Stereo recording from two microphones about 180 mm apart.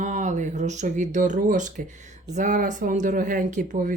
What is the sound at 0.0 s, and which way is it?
Speech, 45° right (ahead or behind).